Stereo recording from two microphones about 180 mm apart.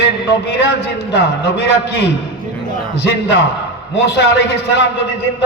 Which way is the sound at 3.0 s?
65° left (ahead or behind).